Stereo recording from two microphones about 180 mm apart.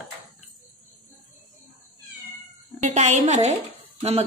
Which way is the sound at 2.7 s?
40° right (ahead or behind).